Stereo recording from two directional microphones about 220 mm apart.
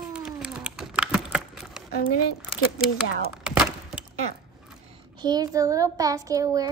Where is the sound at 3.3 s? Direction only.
5° right (ahead or behind).